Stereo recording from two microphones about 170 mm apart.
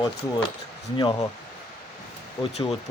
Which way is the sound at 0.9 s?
25° left (ahead or behind).